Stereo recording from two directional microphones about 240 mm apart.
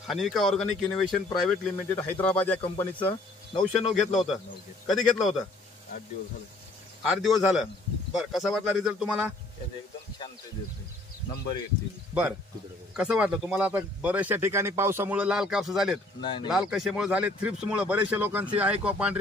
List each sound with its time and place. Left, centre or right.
0.0 s speech: centre
3.0 s speech: left
3.9 s speech: centre
7.0 s speech: centre
12.1 s speech: centre
16.2 s speech: centre
16.4 s speech: centre